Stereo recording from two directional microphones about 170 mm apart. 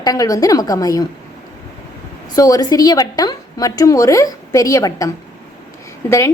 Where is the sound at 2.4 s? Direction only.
20° left (ahead or behind).